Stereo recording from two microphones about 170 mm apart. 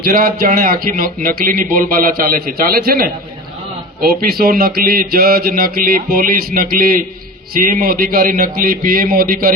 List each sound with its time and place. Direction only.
0.0 s speech: 60° right (ahead or behind)